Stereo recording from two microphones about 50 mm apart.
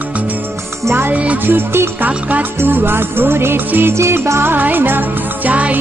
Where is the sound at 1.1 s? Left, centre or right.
Right.